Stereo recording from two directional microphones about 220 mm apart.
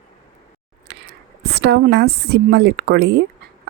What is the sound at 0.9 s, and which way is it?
A woman's voice, 50° right (ahead or behind).